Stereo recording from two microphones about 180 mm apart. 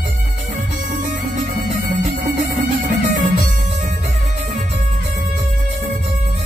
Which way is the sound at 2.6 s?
45° right (ahead or behind).